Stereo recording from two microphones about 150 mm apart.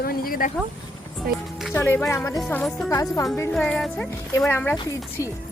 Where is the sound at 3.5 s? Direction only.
5° left (ahead or behind); by 5.3 s 20° left (ahead or behind).